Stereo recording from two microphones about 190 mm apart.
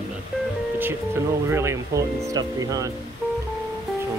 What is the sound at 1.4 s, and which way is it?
Speech, 15° right (ahead or behind).